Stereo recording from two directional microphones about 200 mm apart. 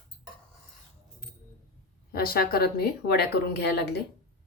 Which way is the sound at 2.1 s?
50° left (ahead or behind).